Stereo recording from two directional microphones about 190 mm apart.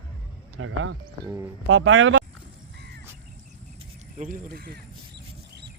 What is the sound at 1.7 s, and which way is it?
Speech, 90° right.